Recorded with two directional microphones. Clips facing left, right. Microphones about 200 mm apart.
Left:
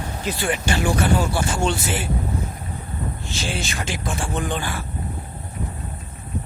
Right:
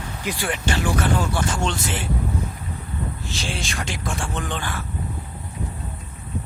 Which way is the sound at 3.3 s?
Centre (ahead or behind).